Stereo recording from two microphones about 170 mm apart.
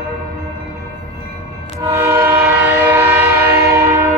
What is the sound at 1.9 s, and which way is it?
Train, 15° right (ahead or behind).